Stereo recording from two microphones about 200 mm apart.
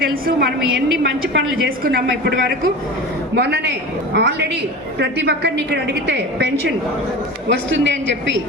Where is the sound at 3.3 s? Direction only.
55° right (ahead or behind).